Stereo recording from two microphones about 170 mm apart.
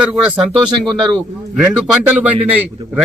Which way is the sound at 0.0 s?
5° right (ahead or behind).